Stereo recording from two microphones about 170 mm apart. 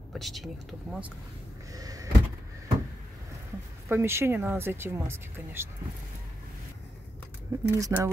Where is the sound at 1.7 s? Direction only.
20° right (ahead or behind).